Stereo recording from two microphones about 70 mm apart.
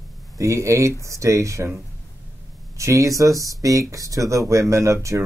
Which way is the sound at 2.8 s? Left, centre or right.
Right.